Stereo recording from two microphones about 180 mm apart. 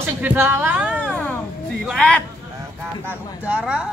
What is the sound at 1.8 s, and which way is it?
Speech, 5° left (ahead or behind).